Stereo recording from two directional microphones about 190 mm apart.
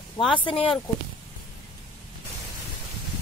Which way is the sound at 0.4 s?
25° left (ahead or behind).